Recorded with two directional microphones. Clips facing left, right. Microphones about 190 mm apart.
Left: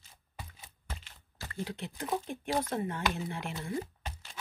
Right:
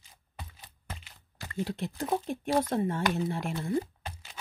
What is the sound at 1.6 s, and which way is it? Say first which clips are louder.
Speech: right 5 dB; 40° right (ahead or behind).